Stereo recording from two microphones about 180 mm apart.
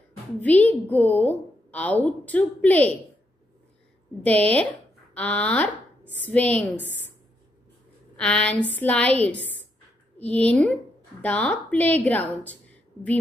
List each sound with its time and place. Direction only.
0.4 s a woman's voice: 10° left (ahead or behind)
4.2 s a woman's voice: 10° left (ahead or behind)
6.8 s a woman's voice: 80° left
8.2 s a woman's voice: 5° left (ahead or behind)
9.3 s a woman's voice: 75° left (ahead or behind)
10.1 s a woman's voice: 10° left (ahead or behind)